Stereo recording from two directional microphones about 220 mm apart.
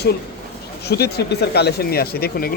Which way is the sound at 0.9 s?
45° left (ahead or behind).